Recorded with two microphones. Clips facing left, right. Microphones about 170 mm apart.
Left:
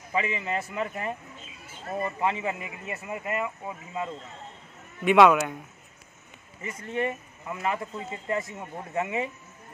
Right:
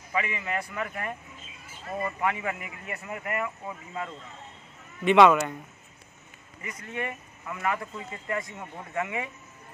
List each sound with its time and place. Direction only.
0.1 s speech: 25° left (ahead or behind)
5.0 s speech: centre (ahead or behind)
6.6 s speech: 30° left (ahead or behind)